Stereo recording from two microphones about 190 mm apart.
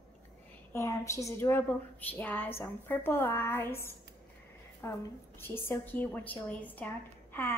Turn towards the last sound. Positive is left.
turn(degrees=10)  # may be behind; listen again after turning